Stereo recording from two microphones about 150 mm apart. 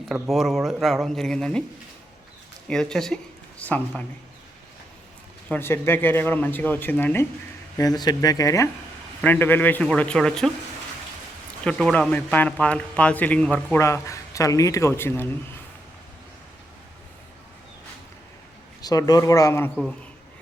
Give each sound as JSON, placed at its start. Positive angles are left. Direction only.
{"t": 0.1, "sound": "speech", "side_deg": 0}
{"t": 2.6, "sound": "speech", "side_deg": 5}
{"t": 5.5, "sound": "speech", "side_deg": 15}
{"t": 7.8, "sound": "speech", "side_deg": 25}
{"t": 11.6, "sound": "speech", "side_deg": 5}
{"t": 13.7, "sound": "speech", "side_deg": 20}
{"t": 18.8, "sound": "speech", "side_deg": 25}